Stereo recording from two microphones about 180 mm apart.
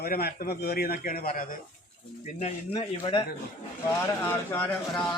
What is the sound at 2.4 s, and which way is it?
Speech, 35° left (ahead or behind).